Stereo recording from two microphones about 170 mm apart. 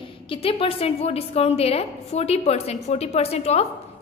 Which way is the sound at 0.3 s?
35° left (ahead or behind).